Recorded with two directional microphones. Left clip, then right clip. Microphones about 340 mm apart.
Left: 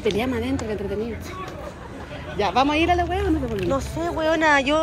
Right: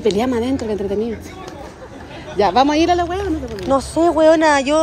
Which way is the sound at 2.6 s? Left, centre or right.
Right.